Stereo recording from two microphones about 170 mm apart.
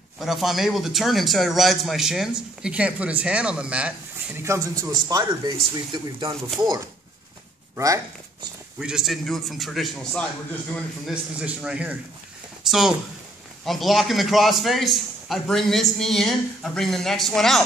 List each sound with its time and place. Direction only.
0.2 s a man's voice: centre (ahead or behind); by 6.1 s 25° right (ahead or behind)
7.7 s speech: 20° right (ahead or behind)
8.7 s a man's voice: 5° right (ahead or behind)